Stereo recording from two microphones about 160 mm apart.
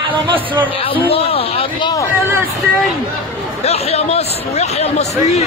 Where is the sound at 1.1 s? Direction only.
35° left (ahead or behind).